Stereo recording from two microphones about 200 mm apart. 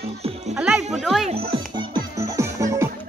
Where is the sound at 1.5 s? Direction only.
25° right (ahead or behind).